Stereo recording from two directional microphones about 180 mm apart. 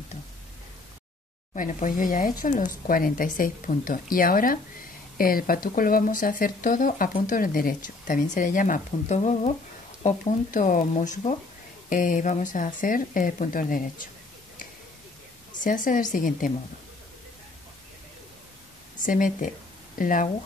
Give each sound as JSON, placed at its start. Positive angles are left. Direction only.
{"t": 1.5, "sound": "speech", "side_deg": 45}
{"t": 15.6, "sound": "speech", "side_deg": 45}
{"t": 18.9, "sound": "speech", "side_deg": 50}